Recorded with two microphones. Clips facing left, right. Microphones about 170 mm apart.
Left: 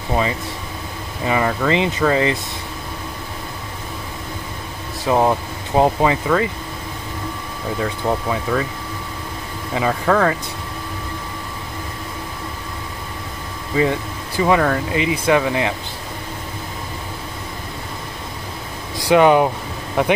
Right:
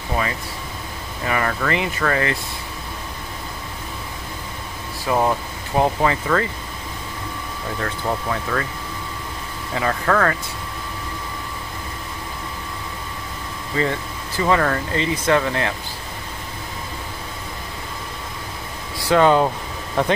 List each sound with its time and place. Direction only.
1.2 s speech: 15° left (ahead or behind)
5.0 s speech: 20° left (ahead or behind)
7.8 s speech: 10° left (ahead or behind)
9.8 s speech: 10° left (ahead or behind)
13.7 s speech: 15° left (ahead or behind)
18.9 s speech: 15° left (ahead or behind)